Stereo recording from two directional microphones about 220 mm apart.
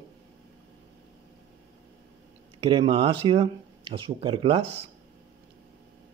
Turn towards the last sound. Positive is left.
turn(degrees=-25)  # may be behind; listen again after turning